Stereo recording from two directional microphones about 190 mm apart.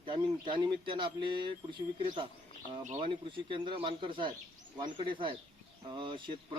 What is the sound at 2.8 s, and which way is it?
Speech, 30° right (ahead or behind).